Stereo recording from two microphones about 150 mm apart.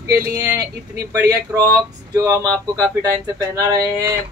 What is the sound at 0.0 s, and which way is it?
Speech, 20° right (ahead or behind).